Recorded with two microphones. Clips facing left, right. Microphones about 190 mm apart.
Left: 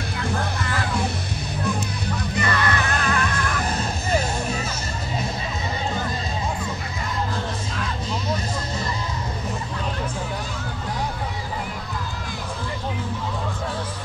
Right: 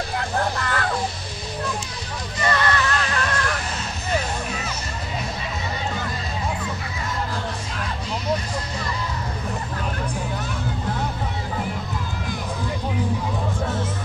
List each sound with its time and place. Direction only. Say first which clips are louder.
0.6 s music: right 1 dB; 65° right (ahead or behind)
2.3 s music: right 2 dB; 55° left (ahead or behind)